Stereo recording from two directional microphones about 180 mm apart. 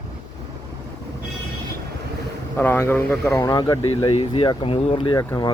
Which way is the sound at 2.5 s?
10° left (ahead or behind).